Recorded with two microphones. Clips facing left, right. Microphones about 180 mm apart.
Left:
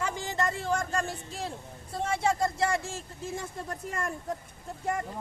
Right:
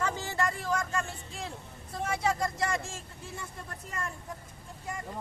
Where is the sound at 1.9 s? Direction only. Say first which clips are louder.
Left 2 dB; 30° left (ahead or behind).